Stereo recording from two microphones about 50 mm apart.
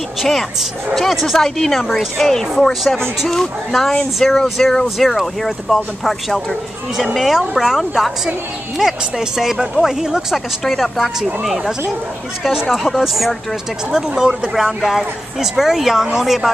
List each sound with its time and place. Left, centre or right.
0.2 s speech: centre
10.3 s speech: centre
13.9 s speech: centre